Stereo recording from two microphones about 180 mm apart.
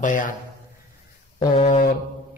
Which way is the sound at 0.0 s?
45° left (ahead or behind).